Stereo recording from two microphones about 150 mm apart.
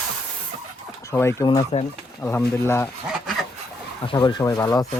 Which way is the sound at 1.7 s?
45° left (ahead or behind).